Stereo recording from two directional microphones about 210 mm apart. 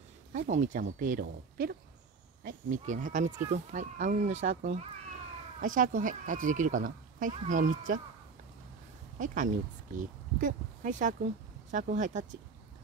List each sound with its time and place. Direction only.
0.3 s speech: 35° right (ahead or behind)
9.2 s speech: 40° right (ahead or behind)